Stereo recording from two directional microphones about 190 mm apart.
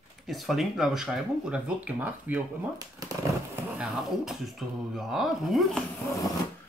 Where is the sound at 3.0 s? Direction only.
20° right (ahead or behind).